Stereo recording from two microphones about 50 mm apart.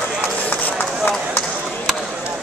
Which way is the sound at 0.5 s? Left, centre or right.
Left.